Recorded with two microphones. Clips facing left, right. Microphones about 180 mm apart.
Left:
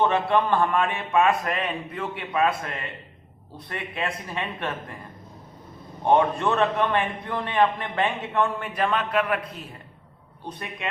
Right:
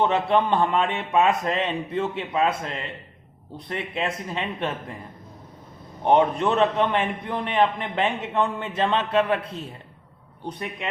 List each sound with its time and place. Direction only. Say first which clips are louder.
0.0 s a man's voice: right 1 dB; 20° right (ahead or behind)
6.1 s a man's voice: right 1 dB; 20° right (ahead or behind)